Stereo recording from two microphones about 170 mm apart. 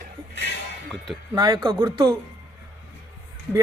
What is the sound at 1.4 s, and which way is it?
Speech, 25° right (ahead or behind).